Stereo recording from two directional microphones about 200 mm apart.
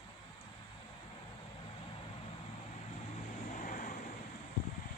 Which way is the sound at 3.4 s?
40° left (ahead or behind).